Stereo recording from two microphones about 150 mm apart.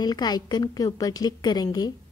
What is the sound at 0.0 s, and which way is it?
A woman's voice, 25° left (ahead or behind).